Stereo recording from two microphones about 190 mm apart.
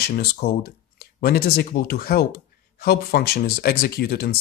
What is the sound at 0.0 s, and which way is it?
Speech, 55° left (ahead or behind).